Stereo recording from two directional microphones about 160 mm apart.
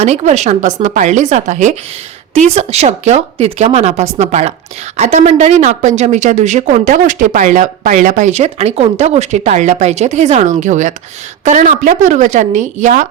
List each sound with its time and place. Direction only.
0.0 s speech: 45° right (ahead or behind)